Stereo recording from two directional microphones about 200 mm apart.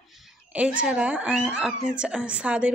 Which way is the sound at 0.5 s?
5° right (ahead or behind).